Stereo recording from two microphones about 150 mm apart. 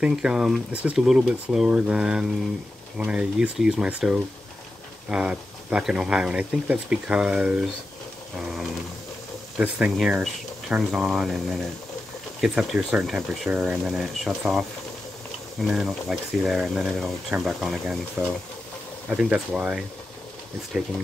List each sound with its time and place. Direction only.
0.0 s speech: 5° right (ahead or behind)
15.6 s speech: centre (ahead or behind)
18.2 s speech: 15° right (ahead or behind)